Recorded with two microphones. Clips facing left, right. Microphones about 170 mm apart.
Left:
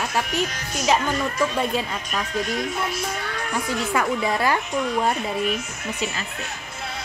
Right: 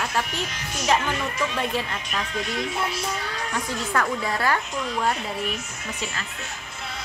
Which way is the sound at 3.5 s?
10° left (ahead or behind).